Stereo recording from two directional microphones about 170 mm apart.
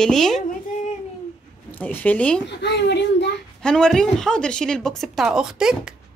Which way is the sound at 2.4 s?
90° left.